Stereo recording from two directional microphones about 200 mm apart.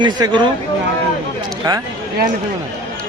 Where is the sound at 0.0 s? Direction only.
25° right (ahead or behind).